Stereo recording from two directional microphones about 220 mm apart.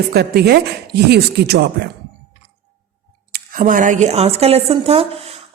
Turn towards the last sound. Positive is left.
turn(degrees=-25)  # may be behind; listen again after turning